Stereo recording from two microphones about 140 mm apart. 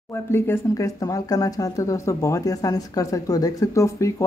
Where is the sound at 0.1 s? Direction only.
15° left (ahead or behind).